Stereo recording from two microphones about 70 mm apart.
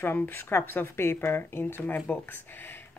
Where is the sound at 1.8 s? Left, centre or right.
Left.